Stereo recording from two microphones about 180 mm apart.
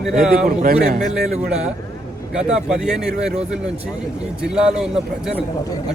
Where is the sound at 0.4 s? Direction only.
55° right (ahead or behind).